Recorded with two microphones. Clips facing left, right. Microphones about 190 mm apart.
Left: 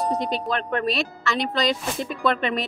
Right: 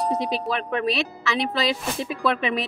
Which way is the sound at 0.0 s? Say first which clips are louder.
Even; 5° right (ahead or behind).